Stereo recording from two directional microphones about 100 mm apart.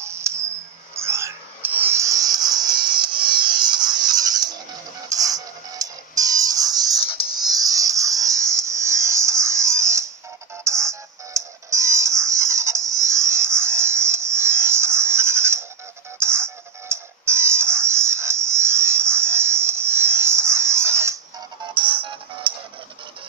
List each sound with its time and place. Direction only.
0.0 s music: 25° right (ahead or behind)
21.7 s music: 60° right (ahead or behind)